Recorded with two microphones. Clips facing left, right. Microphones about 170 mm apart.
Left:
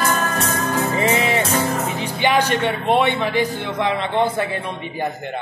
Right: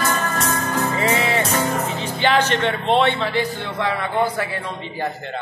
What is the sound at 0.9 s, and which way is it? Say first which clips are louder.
Music: left 2 dB; 20° left (ahead or behind).